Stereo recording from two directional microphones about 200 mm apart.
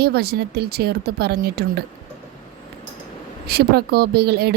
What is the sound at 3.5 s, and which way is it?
A woman's voice, 50° right (ahead or behind).